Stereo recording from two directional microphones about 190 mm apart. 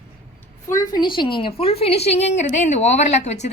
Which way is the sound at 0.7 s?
20° left (ahead or behind).